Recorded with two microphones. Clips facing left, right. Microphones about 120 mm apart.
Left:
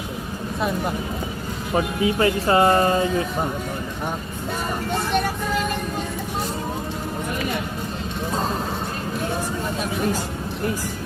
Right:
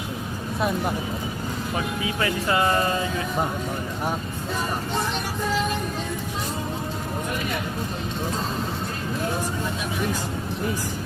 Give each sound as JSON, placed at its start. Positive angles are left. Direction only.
{"t": 1.7, "sound": "speech", "side_deg": 30}